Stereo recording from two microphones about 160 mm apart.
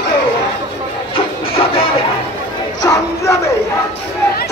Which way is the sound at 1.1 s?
35° left (ahead or behind).